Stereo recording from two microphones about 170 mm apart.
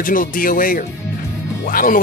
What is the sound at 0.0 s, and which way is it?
Speech, 55° left (ahead or behind).